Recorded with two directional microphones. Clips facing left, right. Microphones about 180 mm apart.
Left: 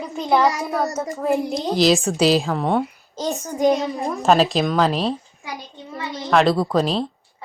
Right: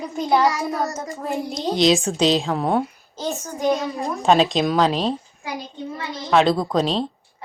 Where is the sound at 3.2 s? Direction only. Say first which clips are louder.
Left 4 dB; 20° left (ahead or behind).